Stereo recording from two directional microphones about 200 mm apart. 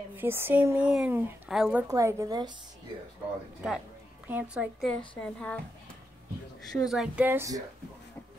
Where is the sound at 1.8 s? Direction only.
15° right (ahead or behind).